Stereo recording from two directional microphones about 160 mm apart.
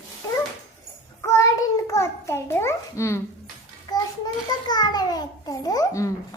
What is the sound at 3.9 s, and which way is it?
Child singing, 25° left (ahead or behind).